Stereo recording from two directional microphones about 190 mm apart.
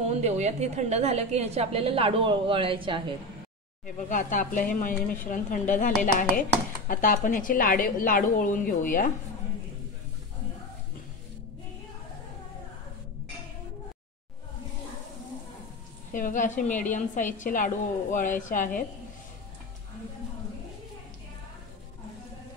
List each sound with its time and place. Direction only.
0.0 s a woman's voice: 35° right (ahead or behind)
3.8 s speech: 45° left (ahead or behind)
16.1 s speech: 45° left (ahead or behind)